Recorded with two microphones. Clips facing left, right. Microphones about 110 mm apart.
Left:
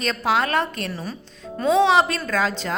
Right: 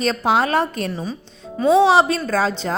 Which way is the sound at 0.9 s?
20° right (ahead or behind).